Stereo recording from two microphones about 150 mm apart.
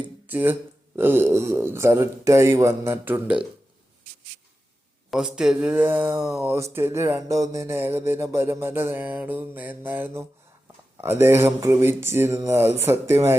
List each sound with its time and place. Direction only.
0.0 s a sound: 10° right (ahead or behind)
0.9 s speech: 15° right (ahead or behind)
5.1 s speech: 5° right (ahead or behind)